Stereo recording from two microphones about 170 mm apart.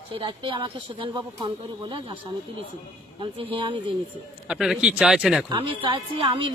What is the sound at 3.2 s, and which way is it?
Speech, 30° right (ahead or behind).